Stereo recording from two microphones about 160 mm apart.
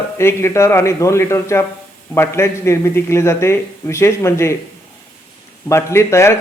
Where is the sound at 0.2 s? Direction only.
15° left (ahead or behind).